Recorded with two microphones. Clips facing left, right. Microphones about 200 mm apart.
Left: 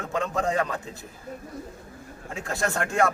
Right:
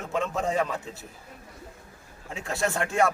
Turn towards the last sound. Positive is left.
turn(degrees=0)  # may be behind; listen again after turning